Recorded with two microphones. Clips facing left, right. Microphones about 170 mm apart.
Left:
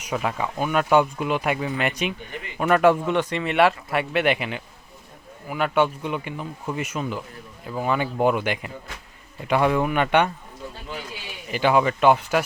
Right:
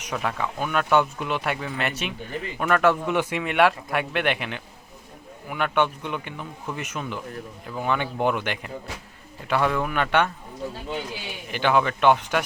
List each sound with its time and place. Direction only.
0.0 s speech: 10° left (ahead or behind)
2.3 s speech: 35° right (ahead or behind)
2.6 s speech: 5° left (ahead or behind)
3.1 s speech: 10° right (ahead or behind); by 10.3 s 15° left (ahead or behind)
11.5 s speech: 5° left (ahead or behind)